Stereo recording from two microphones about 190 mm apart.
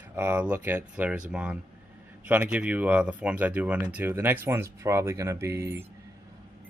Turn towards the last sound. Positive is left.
turn(degrees=-15)  # may be behind; listen again after turning